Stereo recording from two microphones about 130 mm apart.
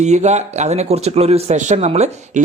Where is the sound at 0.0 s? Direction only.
60° right (ahead or behind).